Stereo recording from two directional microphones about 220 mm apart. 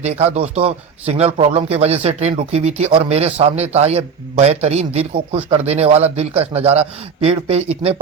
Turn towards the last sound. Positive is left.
turn(degrees=-25)  # may be behind; listen again after turning